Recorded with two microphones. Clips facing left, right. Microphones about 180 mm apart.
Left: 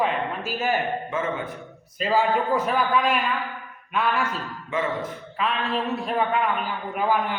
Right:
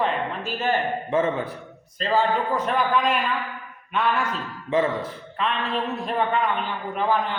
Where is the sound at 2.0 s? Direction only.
10° left (ahead or behind).